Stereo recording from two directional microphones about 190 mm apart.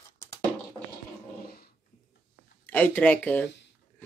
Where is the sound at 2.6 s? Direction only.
10° left (ahead or behind).